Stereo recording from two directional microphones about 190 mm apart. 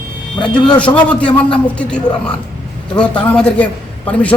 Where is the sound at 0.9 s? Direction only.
15° left (ahead or behind).